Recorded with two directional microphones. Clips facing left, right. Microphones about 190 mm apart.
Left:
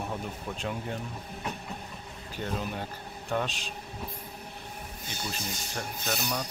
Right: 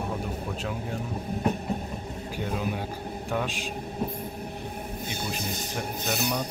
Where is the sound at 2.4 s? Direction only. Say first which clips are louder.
Right 3 dB; 10° right (ahead or behind).